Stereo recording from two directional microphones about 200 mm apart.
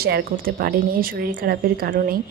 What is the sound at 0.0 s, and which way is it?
A woman's voice, 50° right (ahead or behind).